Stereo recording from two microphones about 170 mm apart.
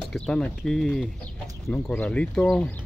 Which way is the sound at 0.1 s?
Centre (ahead or behind).